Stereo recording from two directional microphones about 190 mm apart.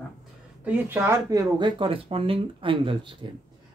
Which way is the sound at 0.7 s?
10° right (ahead or behind).